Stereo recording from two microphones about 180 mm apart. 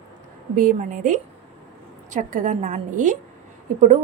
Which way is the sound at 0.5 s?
45° right (ahead or behind).